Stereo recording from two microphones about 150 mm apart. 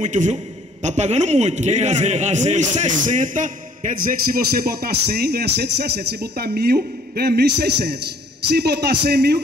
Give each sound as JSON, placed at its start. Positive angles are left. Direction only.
{"t": 0.0, "sound": "a man's voice", "side_deg": -55}